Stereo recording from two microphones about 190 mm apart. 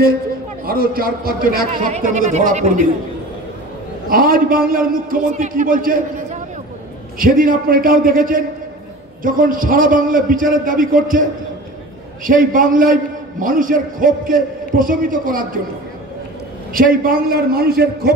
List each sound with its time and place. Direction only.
0.7 s a man's voice: 50° right (ahead or behind)
4.1 s a man's voice: 50° right (ahead or behind)
12.3 s a man's voice: 45° right (ahead or behind)
16.7 s a man's voice: 50° right (ahead or behind)